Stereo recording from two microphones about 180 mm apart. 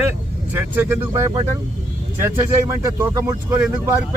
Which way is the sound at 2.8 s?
15° right (ahead or behind).